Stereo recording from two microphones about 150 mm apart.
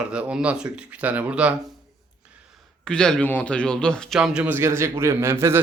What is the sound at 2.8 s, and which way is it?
Speech, 5° left (ahead or behind).